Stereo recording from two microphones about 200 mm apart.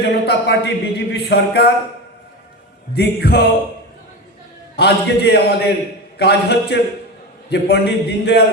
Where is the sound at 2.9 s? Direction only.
55° left (ahead or behind).